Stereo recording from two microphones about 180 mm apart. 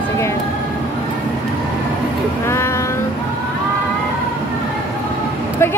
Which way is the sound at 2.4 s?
15° left (ahead or behind).